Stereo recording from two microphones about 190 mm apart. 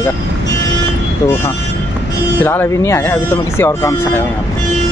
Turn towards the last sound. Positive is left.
turn(degrees=15)  # may be behind; listen again after turning